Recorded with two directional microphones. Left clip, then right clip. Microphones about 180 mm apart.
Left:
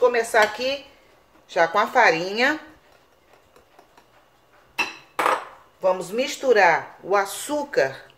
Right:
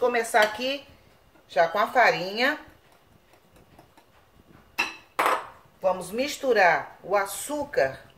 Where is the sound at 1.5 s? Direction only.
40° left (ahead or behind).